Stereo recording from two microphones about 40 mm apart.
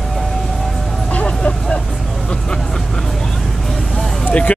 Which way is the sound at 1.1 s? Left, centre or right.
Left.